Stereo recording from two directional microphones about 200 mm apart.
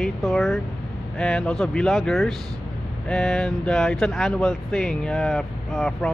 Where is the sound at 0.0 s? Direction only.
Centre (ahead or behind).